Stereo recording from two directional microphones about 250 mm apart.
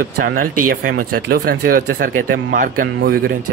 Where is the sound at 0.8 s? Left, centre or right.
Right.